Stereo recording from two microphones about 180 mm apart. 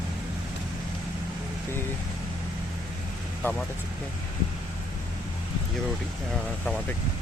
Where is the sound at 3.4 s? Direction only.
10° left (ahead or behind).